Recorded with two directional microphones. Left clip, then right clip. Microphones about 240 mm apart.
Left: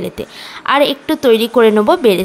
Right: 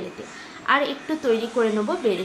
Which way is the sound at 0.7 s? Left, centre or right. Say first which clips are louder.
Left 9 dB; left.